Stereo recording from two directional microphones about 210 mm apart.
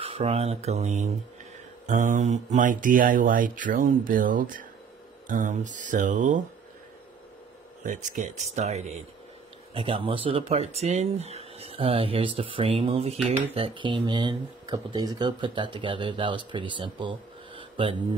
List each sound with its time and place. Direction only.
0.0 s speech: 25° right (ahead or behind)
7.8 s speech: 40° right (ahead or behind); by 17.1 s 25° right (ahead or behind)
17.6 s a sound: 25° right (ahead or behind)